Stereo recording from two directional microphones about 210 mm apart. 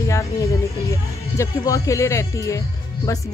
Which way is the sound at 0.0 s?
15° left (ahead or behind).